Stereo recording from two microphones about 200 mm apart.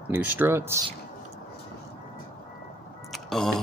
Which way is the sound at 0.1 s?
10° right (ahead or behind).